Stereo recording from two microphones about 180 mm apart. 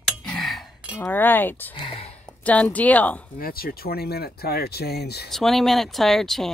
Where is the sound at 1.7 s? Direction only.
30° left (ahead or behind).